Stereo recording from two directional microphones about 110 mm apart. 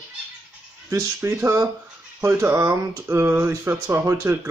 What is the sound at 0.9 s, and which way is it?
Speech, 20° right (ahead or behind).